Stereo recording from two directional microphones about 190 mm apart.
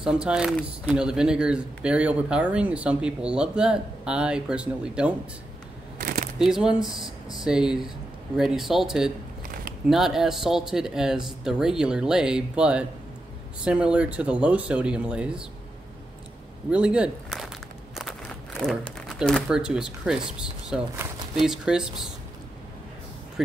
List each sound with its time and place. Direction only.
0.0 s speech: 5° right (ahead or behind)
5.9 s shuffling cards: 50° right (ahead or behind)
6.3 s speech: centre (ahead or behind)
16.7 s speech: 5° right (ahead or behind)